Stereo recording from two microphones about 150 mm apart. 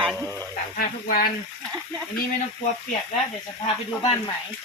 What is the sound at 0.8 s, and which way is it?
Speech, 75° left (ahead or behind).